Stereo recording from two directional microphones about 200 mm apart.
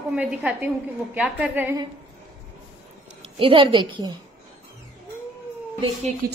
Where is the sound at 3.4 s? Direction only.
25° right (ahead or behind).